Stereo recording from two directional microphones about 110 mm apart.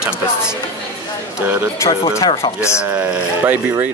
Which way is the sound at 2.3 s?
55° left (ahead or behind).